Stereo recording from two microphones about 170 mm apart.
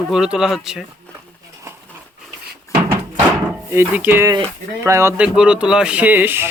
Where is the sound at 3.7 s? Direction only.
10° right (ahead or behind).